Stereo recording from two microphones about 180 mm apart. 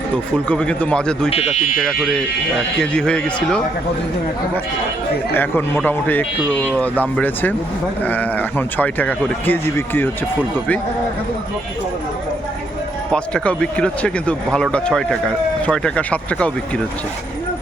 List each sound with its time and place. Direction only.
0.4 s speech: 5° left (ahead or behind)
1.3 s speech: 40° left (ahead or behind)
2.8 s speech: 5° left (ahead or behind)
5.3 s speech: 10° left (ahead or behind)
13.1 s speech: 5° left (ahead or behind)